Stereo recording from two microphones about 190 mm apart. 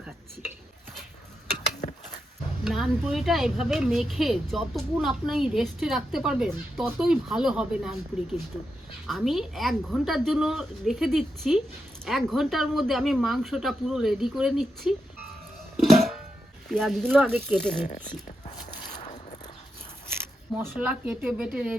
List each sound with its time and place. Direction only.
2.6 s speech: centre (ahead or behind)
15.8 s music: centre (ahead or behind)
16.6 s speech: centre (ahead or behind)
18.5 s a sound: 20° left (ahead or behind)
20.1 s zipper: 10° right (ahead or behind)
21.1 s a woman's voice: 5° right (ahead or behind)